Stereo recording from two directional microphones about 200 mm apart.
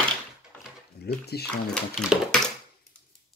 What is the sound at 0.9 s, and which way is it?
Speech, 55° left (ahead or behind).